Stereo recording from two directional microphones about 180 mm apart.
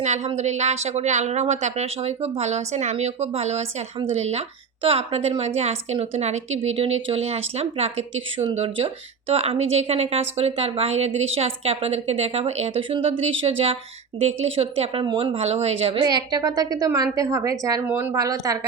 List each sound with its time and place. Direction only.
0.0 s a woman's voice: 40° right (ahead or behind); by 18.6 s 20° right (ahead or behind)